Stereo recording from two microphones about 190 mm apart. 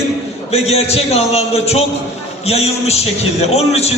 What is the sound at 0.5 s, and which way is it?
A man's voice, 35° left (ahead or behind).